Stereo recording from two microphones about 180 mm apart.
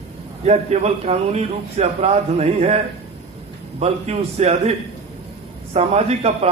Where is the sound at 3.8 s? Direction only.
35° right (ahead or behind).